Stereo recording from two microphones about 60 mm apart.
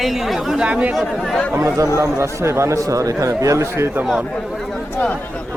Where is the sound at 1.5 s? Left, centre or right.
Right.